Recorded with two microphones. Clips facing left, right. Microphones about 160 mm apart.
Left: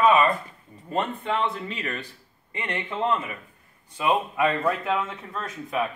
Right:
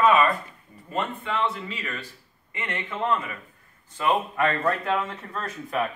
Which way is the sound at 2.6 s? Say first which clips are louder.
Left 2 dB; 20° left (ahead or behind).